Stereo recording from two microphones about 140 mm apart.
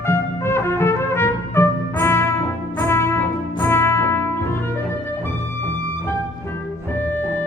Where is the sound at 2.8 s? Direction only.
20° left (ahead or behind).